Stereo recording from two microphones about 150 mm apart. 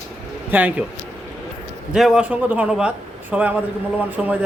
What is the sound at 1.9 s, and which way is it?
A man's voice, 5° right (ahead or behind).